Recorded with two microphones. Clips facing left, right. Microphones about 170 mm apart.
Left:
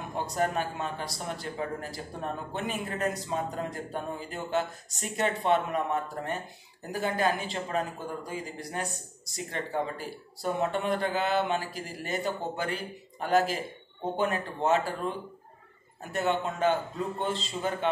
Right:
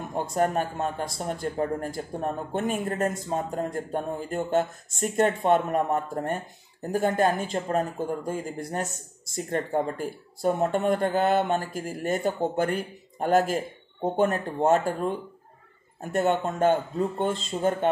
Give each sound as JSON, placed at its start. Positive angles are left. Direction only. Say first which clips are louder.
{"t": 0.1, "sound": "speech", "louder": "right 4 dB", "side_deg": -50}